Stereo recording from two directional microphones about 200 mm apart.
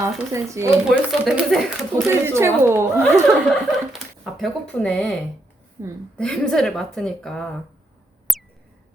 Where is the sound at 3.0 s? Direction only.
5° left (ahead or behind).